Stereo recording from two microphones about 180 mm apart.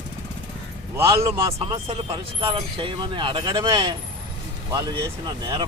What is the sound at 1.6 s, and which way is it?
Speech, 30° right (ahead or behind).